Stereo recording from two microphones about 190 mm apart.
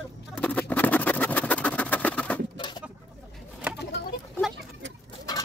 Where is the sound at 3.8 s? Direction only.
60° left (ahead or behind).